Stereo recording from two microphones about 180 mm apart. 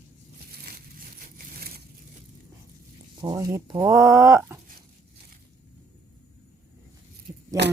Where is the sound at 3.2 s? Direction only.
20° right (ahead or behind).